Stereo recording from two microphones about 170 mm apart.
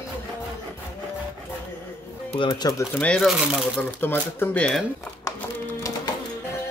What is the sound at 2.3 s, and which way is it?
Speech, 25° left (ahead or behind).